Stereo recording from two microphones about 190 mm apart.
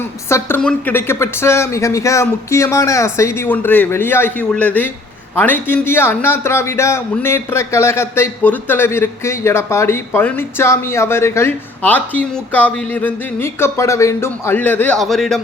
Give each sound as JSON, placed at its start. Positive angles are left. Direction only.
{"t": 0.3, "sound": "a man's voice", "side_deg": 15}